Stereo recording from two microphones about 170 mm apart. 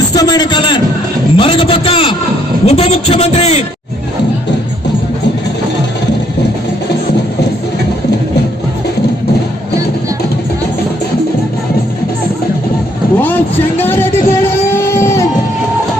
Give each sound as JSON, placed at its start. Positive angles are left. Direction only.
{"t": 0.1, "sound": "a man's voice", "side_deg": 25}
{"t": 13.1, "sound": "speech", "side_deg": 10}